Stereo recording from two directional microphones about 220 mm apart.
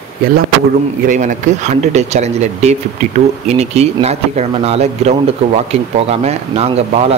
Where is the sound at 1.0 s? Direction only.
35° right (ahead or behind).